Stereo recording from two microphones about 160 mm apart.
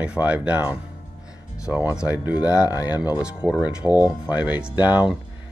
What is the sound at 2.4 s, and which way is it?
Speech, 25° left (ahead or behind).